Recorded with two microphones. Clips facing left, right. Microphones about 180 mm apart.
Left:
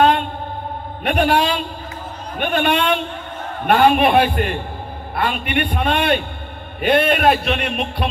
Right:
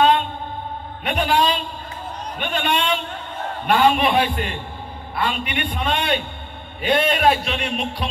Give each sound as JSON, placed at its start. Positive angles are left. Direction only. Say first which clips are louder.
{"t": 1.0, "sound": "a man's voice", "louder": "left 3 dB", "side_deg": 60}